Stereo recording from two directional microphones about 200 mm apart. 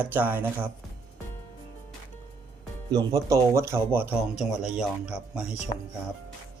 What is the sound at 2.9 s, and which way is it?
Speech, 20° right (ahead or behind).